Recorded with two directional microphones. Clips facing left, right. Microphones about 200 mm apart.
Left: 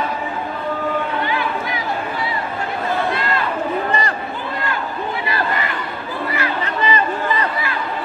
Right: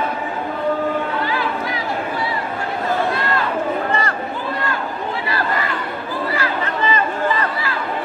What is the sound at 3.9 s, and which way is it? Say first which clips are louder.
Chatter: even; 15° left (ahead or behind).